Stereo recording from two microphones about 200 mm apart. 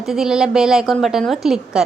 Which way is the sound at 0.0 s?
5° right (ahead or behind).